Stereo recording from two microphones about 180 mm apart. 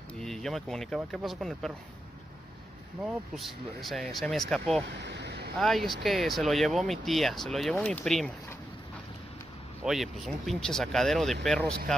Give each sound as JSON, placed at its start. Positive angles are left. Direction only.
{"t": 0.2, "sound": "speech", "side_deg": 0}
{"t": 3.0, "sound": "speech", "side_deg": -5}
{"t": 5.0, "sound": "vehicle", "side_deg": -70}
{"t": 5.6, "sound": "speech", "side_deg": 0}
{"t": 9.8, "sound": "speech", "side_deg": 0}